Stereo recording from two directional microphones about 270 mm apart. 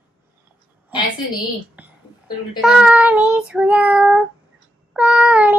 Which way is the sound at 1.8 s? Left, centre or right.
Centre.